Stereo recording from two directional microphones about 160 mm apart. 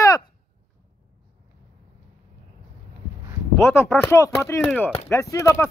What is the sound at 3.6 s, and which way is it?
Speech, 15° left (ahead or behind).